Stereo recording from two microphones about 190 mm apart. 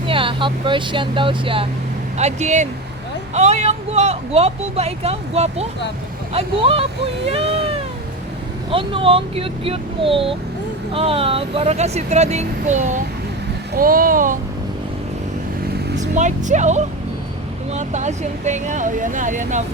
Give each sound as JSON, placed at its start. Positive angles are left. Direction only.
{"t": 0.1, "sound": "speech", "side_deg": -25}
{"t": 8.7, "sound": "speech", "side_deg": -30}
{"t": 13.7, "sound": "a sound", "side_deg": -50}
{"t": 16.0, "sound": "speech", "side_deg": -40}